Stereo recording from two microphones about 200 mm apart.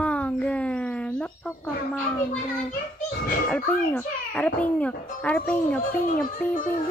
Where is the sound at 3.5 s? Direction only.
5° left (ahead or behind).